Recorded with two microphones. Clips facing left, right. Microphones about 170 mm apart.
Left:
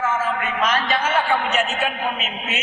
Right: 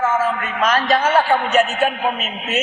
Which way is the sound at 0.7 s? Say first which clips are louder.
Right 8 dB; 40° right (ahead or behind).